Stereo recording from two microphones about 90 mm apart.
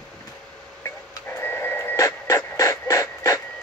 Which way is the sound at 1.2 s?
25° left (ahead or behind).